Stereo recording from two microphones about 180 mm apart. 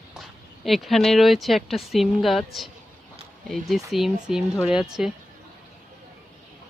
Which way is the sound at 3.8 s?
Centre (ahead or behind).